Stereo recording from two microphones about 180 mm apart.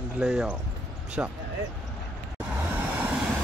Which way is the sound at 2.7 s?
5° right (ahead or behind).